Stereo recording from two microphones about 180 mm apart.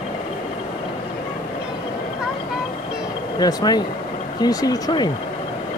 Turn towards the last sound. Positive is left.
turn(degrees=20)  # may be behind; listen again after turning